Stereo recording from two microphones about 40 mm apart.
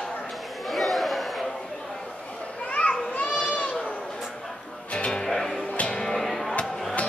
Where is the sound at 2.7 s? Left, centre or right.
Left.